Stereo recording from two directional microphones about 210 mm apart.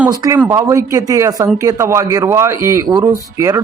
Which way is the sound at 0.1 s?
20° right (ahead or behind).